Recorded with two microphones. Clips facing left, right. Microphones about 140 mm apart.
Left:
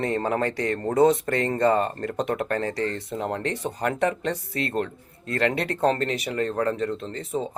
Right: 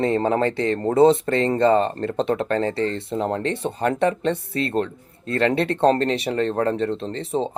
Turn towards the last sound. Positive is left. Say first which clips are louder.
# right 5 dB
turn(degrees=-30)  # may be behind; listen again after turning